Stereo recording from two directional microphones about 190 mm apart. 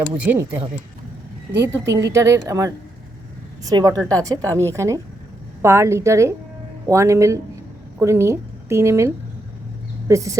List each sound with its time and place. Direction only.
0.2 s a woman's voice: 10° right (ahead or behind)
1.6 s a woman's voice: 15° right (ahead or behind)